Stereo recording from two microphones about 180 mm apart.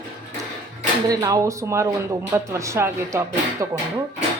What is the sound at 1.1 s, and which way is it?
Speech, 20° right (ahead or behind).